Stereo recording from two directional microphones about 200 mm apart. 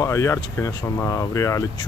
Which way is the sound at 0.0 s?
15° left (ahead or behind).